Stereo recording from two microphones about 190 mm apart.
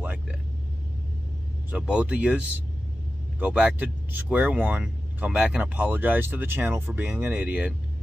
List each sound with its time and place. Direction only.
1.7 s speech: 5° right (ahead or behind)